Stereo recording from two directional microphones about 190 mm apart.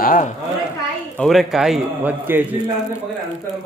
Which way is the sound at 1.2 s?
Centre (ahead or behind).